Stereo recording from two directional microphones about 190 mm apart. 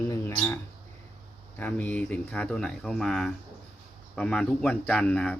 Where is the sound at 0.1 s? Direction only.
15° left (ahead or behind).